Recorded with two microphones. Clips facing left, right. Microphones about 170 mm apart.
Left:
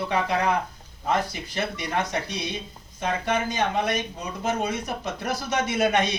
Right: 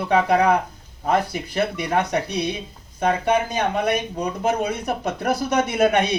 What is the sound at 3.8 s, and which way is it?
Speech, 55° right (ahead or behind).